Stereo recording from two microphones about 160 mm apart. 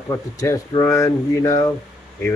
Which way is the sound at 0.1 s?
20° left (ahead or behind).